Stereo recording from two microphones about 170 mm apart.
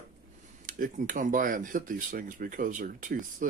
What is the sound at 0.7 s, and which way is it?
Speech, 50° right (ahead or behind).